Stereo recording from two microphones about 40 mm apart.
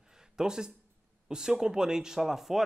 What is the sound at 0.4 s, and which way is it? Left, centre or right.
A man's voice, centre.